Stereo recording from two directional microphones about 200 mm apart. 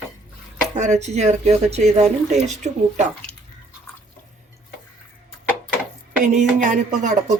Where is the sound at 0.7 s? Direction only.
35° right (ahead or behind).